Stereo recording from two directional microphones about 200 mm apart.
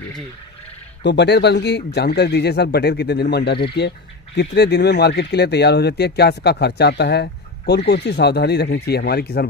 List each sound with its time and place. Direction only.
1.0 s speech: 60° left (ahead or behind)